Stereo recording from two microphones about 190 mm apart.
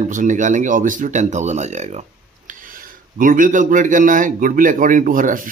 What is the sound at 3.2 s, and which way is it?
Speech, 45° right (ahead or behind).